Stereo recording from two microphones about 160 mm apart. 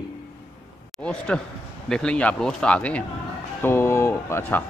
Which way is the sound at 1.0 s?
5° left (ahead or behind).